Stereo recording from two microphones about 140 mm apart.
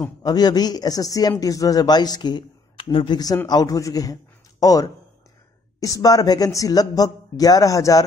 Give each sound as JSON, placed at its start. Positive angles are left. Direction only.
{"t": 0.2, "sound": "speech", "side_deg": 30}